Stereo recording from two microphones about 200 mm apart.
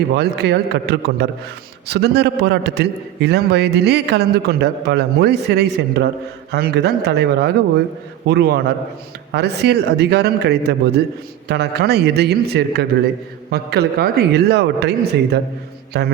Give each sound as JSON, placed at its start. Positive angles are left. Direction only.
{"t": 0.1, "sound": "a man's voice", "side_deg": -55}